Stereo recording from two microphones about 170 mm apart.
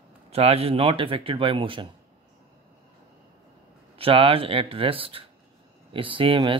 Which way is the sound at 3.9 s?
35° right (ahead or behind).